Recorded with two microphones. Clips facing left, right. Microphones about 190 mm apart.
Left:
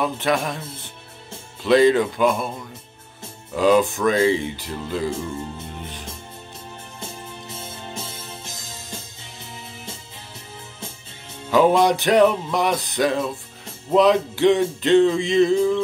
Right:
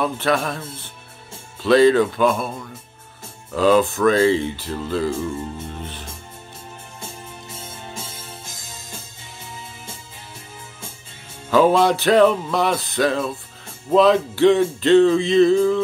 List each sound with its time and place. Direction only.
0.0 s music: 20° left (ahead or behind)
1.6 s speech: 20° left (ahead or behind)
3.5 s music: 15° left (ahead or behind)
11.5 s music: 20° left (ahead or behind)